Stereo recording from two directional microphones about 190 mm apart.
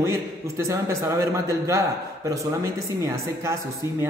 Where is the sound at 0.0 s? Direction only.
15° right (ahead or behind).